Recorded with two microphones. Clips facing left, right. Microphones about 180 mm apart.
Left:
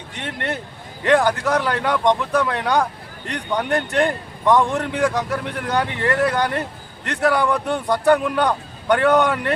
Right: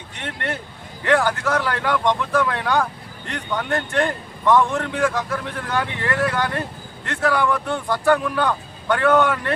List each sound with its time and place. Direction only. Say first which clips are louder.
0.1 s a man's voice: left 2 dB; 20° left (ahead or behind)